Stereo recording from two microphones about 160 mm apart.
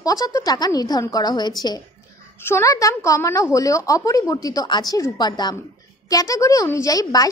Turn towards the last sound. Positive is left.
turn(degrees=20)  # may be behind; listen again after turning